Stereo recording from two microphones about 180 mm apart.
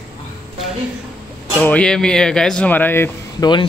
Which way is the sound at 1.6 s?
10° left (ahead or behind).